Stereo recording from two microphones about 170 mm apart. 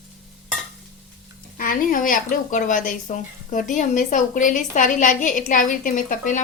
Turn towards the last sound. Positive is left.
turn(degrees=55)  # may be behind; listen again after turning